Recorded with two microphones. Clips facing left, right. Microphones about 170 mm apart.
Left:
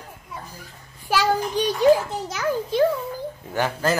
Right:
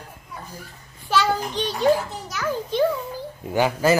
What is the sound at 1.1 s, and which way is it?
Speech, 10° left (ahead or behind).